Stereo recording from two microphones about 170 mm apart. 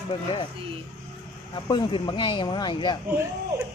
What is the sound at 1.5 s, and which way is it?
Speech, 25° left (ahead or behind).